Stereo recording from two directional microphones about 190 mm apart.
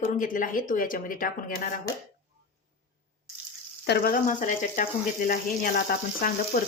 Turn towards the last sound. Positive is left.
turn(degrees=45)  # may be behind; listen again after turning